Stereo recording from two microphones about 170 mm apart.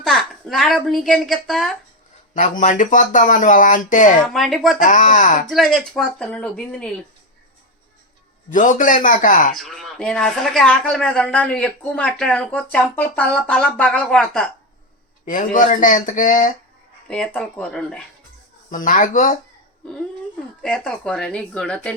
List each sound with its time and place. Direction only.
0.0 s a woman's voice: centre (ahead or behind)
2.3 s speech: 50° left (ahead or behind)
4.3 s a woman's voice: centre (ahead or behind)
4.8 s speech: 50° left (ahead or behind)
5.5 s a woman's voice: centre (ahead or behind)
8.5 s speech: 50° left (ahead or behind)
9.6 s a woman's voice: centre (ahead or behind)
15.2 s speech: 50° left (ahead or behind)
17.1 s a woman's voice: 5° left (ahead or behind)
18.7 s speech: 50° left (ahead or behind)
20.6 s a woman's voice: 5° left (ahead or behind)